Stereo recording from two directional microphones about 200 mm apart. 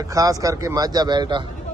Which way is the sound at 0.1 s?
15° right (ahead or behind).